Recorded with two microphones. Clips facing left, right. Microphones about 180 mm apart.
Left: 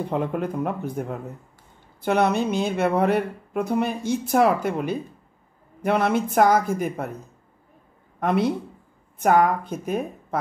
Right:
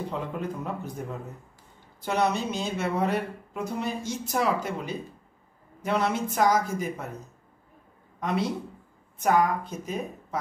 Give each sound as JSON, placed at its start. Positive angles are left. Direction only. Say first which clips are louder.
{"t": 0.1, "sound": "speech", "louder": "left 7 dB", "side_deg": 60}
{"t": 8.2, "sound": "speech", "louder": "left 6 dB", "side_deg": 55}